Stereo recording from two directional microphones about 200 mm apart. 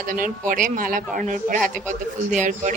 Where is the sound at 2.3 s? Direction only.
40° right (ahead or behind).